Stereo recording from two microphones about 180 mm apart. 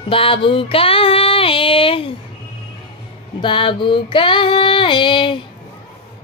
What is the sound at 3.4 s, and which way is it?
Female singing, 30° left (ahead or behind).